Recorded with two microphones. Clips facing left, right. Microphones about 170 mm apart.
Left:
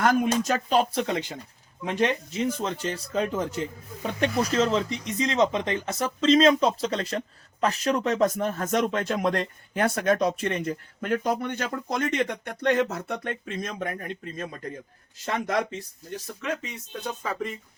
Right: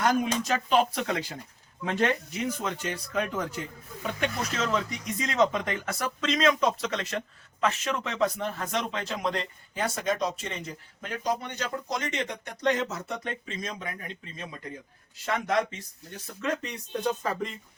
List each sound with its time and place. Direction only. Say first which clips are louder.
0.0 s speech: left 3 dB; 50° left (ahead or behind)
1.0 s speech: left 2 dB; 25° left (ahead or behind)
2.4 s speech: left 4 dB; 30° left (ahead or behind); by 14.5 s 50° left (ahead or behind)
16.4 s speech: right 2 dB; 5° left (ahead or behind)